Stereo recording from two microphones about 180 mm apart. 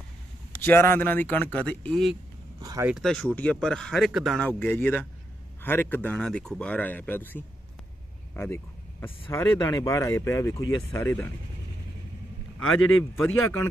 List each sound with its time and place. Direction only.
0.6 s speech: 10° left (ahead or behind)
2.6 s speech: 20° right (ahead or behind)
2.9 s speech: centre (ahead or behind)
8.4 s a sound: 15° left (ahead or behind)
9.3 s speech: 15° left (ahead or behind)
12.5 s a man's voice: 90° left
13.1 s speech: 15° left (ahead or behind)